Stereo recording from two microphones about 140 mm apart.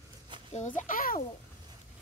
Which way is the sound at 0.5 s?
65° left (ahead or behind).